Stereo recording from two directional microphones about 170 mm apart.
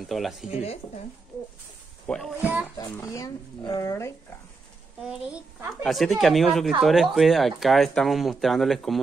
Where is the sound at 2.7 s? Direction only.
20° left (ahead or behind).